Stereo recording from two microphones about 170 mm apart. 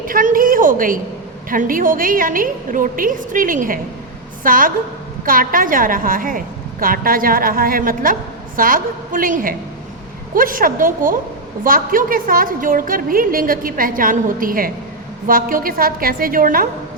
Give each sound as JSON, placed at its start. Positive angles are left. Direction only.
{"t": 0.0, "sound": "a woman's voice", "side_deg": -55}